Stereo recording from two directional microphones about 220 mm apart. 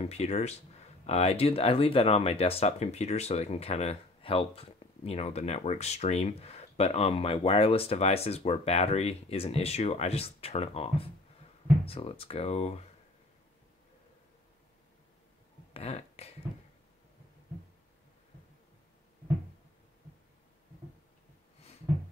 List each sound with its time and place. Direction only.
0.0 s speech: 30° left (ahead or behind)
15.7 s speech: 30° left (ahead or behind)